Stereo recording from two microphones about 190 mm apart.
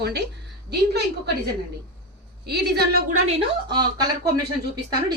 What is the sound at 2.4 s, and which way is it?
Speech, 55° right (ahead or behind).